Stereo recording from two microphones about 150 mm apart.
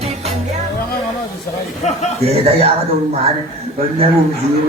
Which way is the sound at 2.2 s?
45° right (ahead or behind).